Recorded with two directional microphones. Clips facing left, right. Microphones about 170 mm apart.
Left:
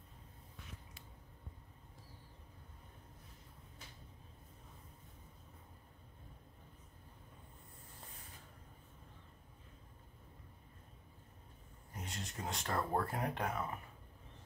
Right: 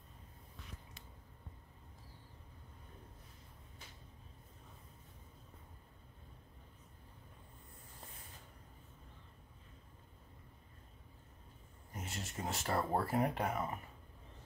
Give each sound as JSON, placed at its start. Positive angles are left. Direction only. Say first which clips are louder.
{"t": 11.9, "sound": "speech", "louder": "right 1 dB", "side_deg": -5}